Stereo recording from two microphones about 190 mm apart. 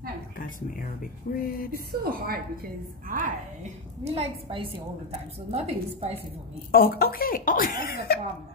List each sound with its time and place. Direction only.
0.4 s speech: 45° left (ahead or behind)
1.7 s a woman's voice: 50° right (ahead or behind)
4.0 s a woman's voice: 30° right (ahead or behind)
6.7 s speech: 50° left (ahead or behind)